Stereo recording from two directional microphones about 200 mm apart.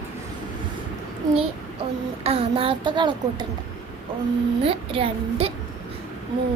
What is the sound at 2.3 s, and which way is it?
Speech, 30° right (ahead or behind).